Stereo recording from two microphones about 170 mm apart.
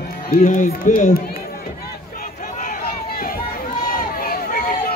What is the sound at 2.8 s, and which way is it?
Run, 55° left (ahead or behind).